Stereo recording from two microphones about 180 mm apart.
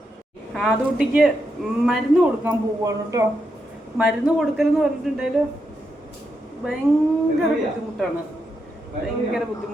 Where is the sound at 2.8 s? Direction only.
20° right (ahead or behind).